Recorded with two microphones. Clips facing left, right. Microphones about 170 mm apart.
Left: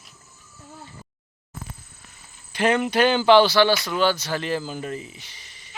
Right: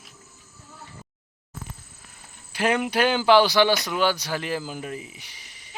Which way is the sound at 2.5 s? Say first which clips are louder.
Left 2 dB; 10° right (ahead or behind).